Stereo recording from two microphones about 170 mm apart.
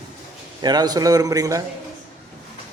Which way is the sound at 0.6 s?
25° right (ahead or behind).